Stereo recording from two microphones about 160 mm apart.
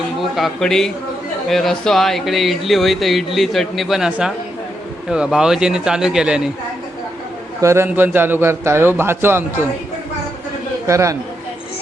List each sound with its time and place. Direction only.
0.2 s speech: centre (ahead or behind)
7.6 s a man's voice: 15° right (ahead or behind)
10.8 s speech: 20° right (ahead or behind)